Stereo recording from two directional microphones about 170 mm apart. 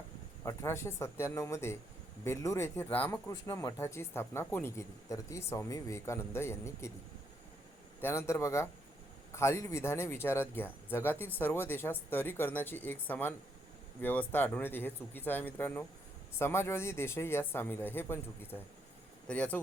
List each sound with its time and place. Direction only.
0.4 s speech: 15° left (ahead or behind)
8.0 s speech: 15° left (ahead or behind)